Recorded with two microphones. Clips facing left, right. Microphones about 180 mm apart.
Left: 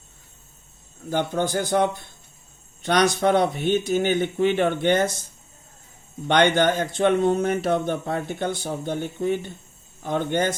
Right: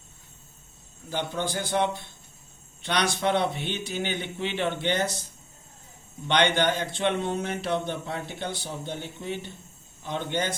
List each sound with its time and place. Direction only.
1.1 s speech: 45° left (ahead or behind)
6.2 s speech: 45° left (ahead or behind)